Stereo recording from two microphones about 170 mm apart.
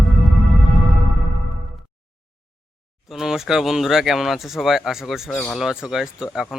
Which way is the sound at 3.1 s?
Centre (ahead or behind).